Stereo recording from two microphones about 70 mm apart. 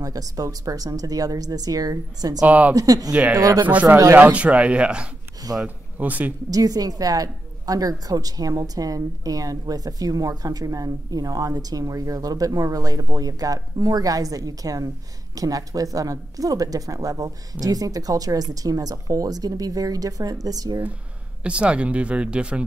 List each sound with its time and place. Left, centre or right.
0.0 s a woman's voice: right
2.4 s speech: right
2.7 s a woman's voice: right
3.1 s speech: right
3.3 s a woman's voice: right
3.6 s speech: right
5.5 s a woman's voice: right
5.9 s speech: right
6.5 s a woman's voice: right
21.4 s speech: centre